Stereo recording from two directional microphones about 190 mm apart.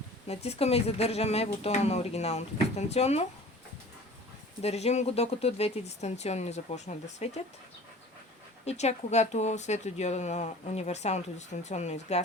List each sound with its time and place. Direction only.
0.3 s speech: 35° left (ahead or behind)
4.6 s speech: 35° left (ahead or behind)
8.6 s speech: 35° left (ahead or behind)